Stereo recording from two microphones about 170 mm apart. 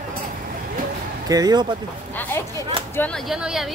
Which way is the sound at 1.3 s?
25° right (ahead or behind).